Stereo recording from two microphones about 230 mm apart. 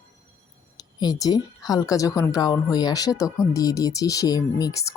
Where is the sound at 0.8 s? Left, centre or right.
Centre.